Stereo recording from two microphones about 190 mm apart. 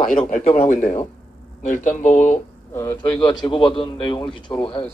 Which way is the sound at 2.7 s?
15° left (ahead or behind).